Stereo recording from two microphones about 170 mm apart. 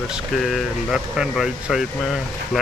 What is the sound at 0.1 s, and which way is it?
Speech, centre (ahead or behind).